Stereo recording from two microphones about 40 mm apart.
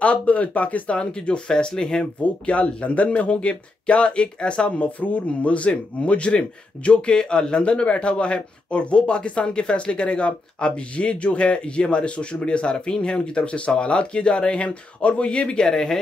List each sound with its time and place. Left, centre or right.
0.0 s speech: left
0.9 s a man's voice: left
2.5 s a man's voice: left
15.7 s speech: centre